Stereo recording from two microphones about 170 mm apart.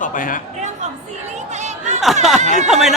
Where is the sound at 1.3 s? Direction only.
45° right (ahead or behind).